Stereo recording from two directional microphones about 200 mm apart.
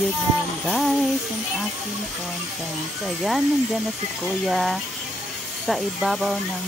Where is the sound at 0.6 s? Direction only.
Centre (ahead or behind).